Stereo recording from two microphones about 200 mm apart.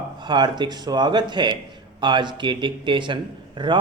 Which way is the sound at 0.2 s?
20° right (ahead or behind).